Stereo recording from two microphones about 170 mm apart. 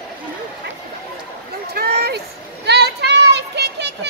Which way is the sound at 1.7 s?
70° right (ahead or behind).